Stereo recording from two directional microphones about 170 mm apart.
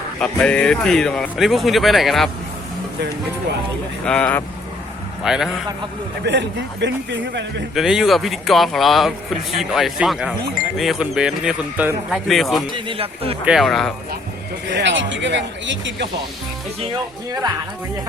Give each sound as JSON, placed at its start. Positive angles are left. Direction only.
{"t": 0.2, "sound": "speech", "side_deg": 5}
{"t": 4.0, "sound": "speech", "side_deg": 5}
{"t": 5.2, "sound": "speech", "side_deg": -5}
{"t": 6.2, "sound": "speech", "side_deg": -90}
{"t": 7.8, "sound": "speech", "side_deg": -5}
{"t": 12.7, "sound": "speech", "side_deg": -30}
{"t": 13.4, "sound": "speech", "side_deg": -5}
{"t": 14.7, "sound": "speech", "side_deg": -90}